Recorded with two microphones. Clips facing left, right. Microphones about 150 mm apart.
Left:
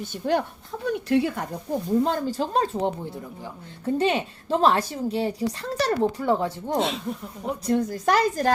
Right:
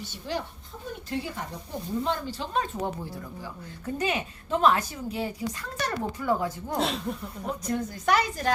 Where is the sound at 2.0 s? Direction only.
40° left (ahead or behind).